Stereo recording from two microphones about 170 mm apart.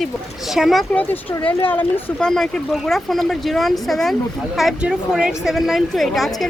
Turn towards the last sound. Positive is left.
turn(degrees=0)  # may be behind; listen again after turning